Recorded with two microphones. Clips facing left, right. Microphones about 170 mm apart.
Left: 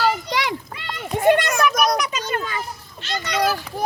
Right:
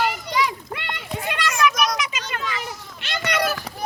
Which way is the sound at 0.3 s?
75° left (ahead or behind).